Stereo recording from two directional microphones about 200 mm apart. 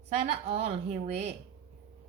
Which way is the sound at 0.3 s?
30° right (ahead or behind).